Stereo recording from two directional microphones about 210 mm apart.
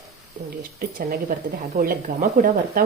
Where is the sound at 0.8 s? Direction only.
45° right (ahead or behind).